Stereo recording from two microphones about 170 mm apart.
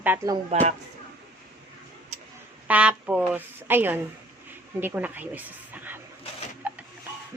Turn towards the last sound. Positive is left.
turn(degrees=-10)  # may be behind; listen again after turning